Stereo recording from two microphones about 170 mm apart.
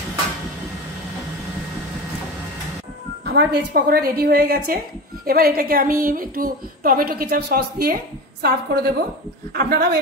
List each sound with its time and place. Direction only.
3.3 s a woman's voice: 70° right (ahead or behind)